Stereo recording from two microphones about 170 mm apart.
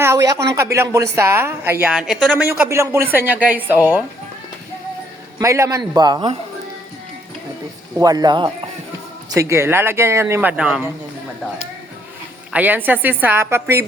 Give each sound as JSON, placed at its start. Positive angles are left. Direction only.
{"t": 0.0, "sound": "a woman's voice", "side_deg": -20}
{"t": 5.4, "sound": "a man's voice", "side_deg": -20}
{"t": 7.9, "sound": "a man's voice", "side_deg": -20}
{"t": 12.5, "sound": "a woman's voice", "side_deg": -10}